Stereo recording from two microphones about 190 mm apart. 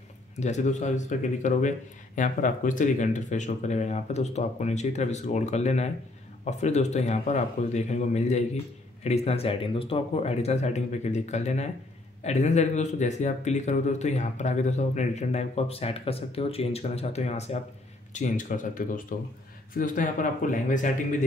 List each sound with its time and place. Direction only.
0.4 s a man's voice: 40° left (ahead or behind)